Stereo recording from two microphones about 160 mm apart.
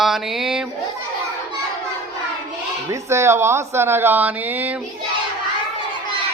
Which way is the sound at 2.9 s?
15° right (ahead or behind).